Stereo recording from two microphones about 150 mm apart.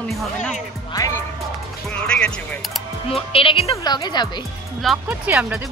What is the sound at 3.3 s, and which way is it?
Speech, 40° left (ahead or behind).